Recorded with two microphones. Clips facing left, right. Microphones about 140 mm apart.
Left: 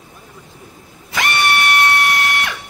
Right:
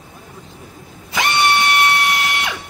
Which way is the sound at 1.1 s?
20° right (ahead or behind).